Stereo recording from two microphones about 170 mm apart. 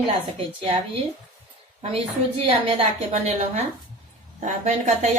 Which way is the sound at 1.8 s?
35° right (ahead or behind).